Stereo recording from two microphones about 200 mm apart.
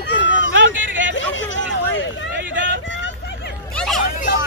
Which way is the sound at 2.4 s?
65° right (ahead or behind).